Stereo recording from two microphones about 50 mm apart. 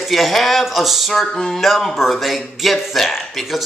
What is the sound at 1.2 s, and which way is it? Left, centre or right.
Speech, centre.